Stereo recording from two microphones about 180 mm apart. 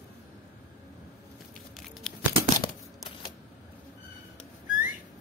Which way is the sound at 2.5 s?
20° left (ahead or behind).